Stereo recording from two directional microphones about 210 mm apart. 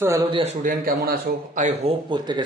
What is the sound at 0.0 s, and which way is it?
Speech, 15° right (ahead or behind).